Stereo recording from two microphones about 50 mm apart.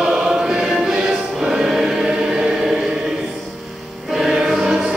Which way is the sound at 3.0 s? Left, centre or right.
Centre.